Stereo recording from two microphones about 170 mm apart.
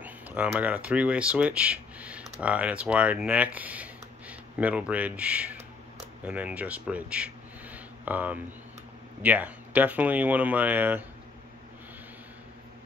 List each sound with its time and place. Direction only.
0.0 s speech: 10° right (ahead or behind)